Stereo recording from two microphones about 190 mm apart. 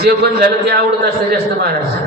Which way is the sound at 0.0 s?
55° right (ahead or behind).